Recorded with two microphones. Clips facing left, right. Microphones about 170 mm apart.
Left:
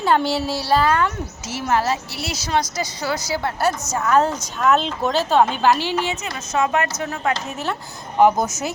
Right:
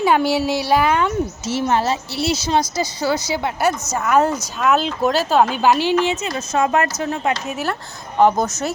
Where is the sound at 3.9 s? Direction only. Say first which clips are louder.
Right 1 dB; 5° right (ahead or behind).